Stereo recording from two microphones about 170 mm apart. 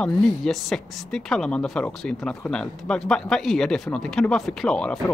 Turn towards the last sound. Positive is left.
turn(degrees=5)  # may be behind; listen again after turning